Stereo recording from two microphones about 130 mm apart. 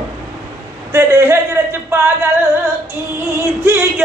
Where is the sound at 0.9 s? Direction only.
20° right (ahead or behind).